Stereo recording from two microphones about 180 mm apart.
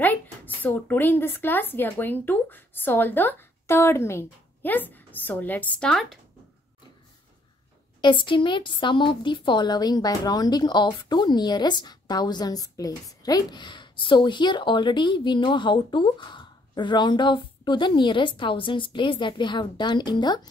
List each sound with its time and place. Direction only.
0.0 s speech: 10° left (ahead or behind)
8.0 s a woman's voice: 25° left (ahead or behind)